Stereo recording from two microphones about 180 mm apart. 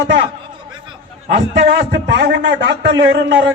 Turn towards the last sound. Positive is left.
turn(degrees=-80)